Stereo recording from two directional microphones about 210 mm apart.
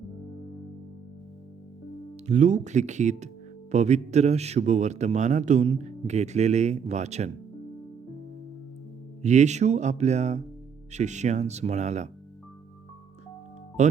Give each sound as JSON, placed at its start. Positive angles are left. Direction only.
{"t": 2.2, "sound": "a man's voice", "side_deg": -35}
{"t": 9.2, "sound": "a man's voice", "side_deg": -35}
{"t": 13.8, "sound": "speech", "side_deg": -35}